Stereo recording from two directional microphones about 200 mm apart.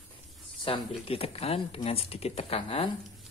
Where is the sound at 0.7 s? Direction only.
25° left (ahead or behind).